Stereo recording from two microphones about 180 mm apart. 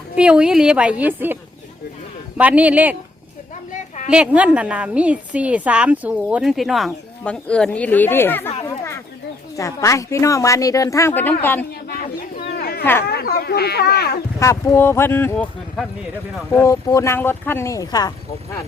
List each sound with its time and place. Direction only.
0.2 s a woman's voice: 5° right (ahead or behind)
2.4 s a woman's voice: 10° right (ahead or behind)
3.5 s a sound: 45° left (ahead or behind)
4.1 s a woman's voice: 5° right (ahead or behind); by 8.4 s 10° left (ahead or behind)
8.6 s chatter: 15° left (ahead or behind)
9.6 s speech: 15° left (ahead or behind)
11.9 s a sound: 55° left (ahead or behind)
12.8 s speech: 10° left (ahead or behind)
13.1 s speech: 60° left (ahead or behind)
14.3 s speech: 15° left (ahead or behind)